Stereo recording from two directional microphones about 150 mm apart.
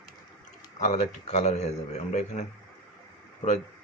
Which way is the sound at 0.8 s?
50° left (ahead or behind).